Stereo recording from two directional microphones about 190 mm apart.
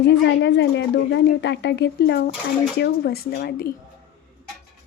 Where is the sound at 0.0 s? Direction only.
65° left (ahead or behind).